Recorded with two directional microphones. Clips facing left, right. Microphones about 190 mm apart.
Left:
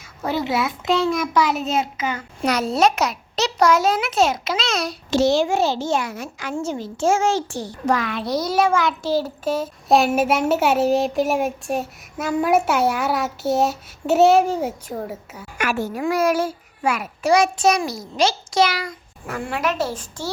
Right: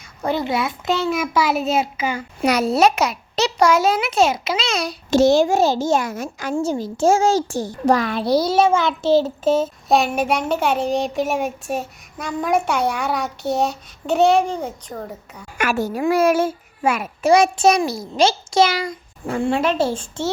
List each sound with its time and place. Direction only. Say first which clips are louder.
0.3 s a child's voice: right 1 dB; 5° left (ahead or behind)
5.1 s a child's voice: right 3 dB; 45° right (ahead or behind); by 9.6 s 25° right (ahead or behind)
9.9 s a child's voice: left 2 dB; centre (ahead or behind)
15.5 s a child's voice: right 2 dB; 45° right (ahead or behind); by 20.3 s 25° right (ahead or behind)